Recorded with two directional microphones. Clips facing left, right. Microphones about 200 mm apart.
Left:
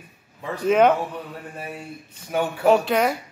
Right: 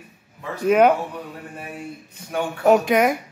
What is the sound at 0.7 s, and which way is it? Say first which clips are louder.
Speech: right 1 dB; 10° right (ahead or behind).